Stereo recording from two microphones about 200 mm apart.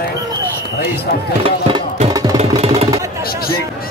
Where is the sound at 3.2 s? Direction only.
50° left (ahead or behind).